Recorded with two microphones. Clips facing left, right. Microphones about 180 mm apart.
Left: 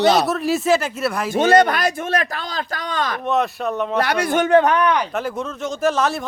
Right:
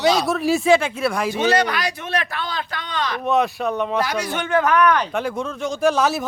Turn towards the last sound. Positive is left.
turn(degrees=0)  # may be behind; listen again after turning